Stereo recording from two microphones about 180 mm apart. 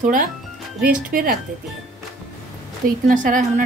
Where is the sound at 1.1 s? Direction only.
50° right (ahead or behind).